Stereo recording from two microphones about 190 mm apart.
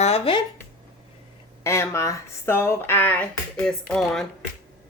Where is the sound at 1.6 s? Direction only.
15° left (ahead or behind).